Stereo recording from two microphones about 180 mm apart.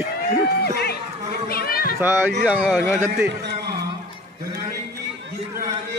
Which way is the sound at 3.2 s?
70° right (ahead or behind).